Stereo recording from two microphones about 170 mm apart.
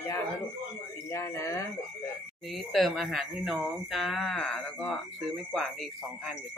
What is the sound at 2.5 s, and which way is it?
Speech, centre (ahead or behind).